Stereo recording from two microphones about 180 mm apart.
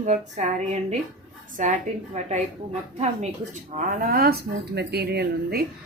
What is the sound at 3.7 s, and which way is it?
A woman's voice, 50° right (ahead or behind).